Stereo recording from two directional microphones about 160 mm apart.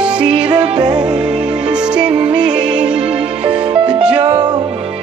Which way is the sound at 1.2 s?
5° right (ahead or behind).